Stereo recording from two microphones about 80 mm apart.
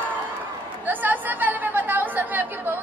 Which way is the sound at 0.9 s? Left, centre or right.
Right.